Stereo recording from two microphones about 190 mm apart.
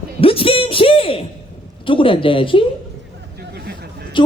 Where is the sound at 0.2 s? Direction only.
30° left (ahead or behind).